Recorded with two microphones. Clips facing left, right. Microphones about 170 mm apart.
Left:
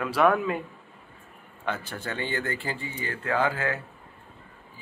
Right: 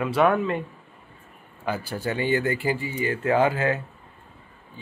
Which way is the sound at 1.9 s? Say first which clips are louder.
Right 7 dB; 15° right (ahead or behind).